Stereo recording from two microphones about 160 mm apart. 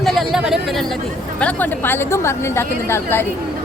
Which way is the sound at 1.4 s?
10° left (ahead or behind).